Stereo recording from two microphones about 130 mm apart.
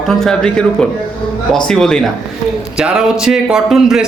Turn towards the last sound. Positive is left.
turn(degrees=-5)  # may be behind; listen again after turning